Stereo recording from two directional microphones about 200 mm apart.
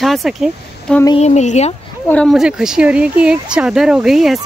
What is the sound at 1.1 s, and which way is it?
Speech, 35° left (ahead or behind).